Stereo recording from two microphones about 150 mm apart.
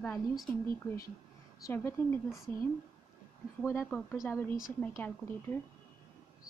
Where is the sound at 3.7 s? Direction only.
15° left (ahead or behind).